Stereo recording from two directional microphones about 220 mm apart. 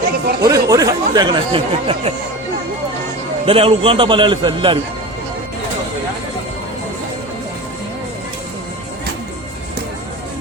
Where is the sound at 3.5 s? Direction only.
25° right (ahead or behind).